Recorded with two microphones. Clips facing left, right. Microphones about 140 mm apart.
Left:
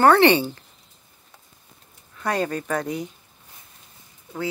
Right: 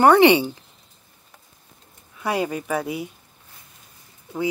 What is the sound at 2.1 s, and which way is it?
Speech, 10° right (ahead or behind).